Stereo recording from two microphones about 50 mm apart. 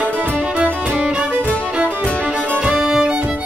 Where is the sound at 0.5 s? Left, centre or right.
Right.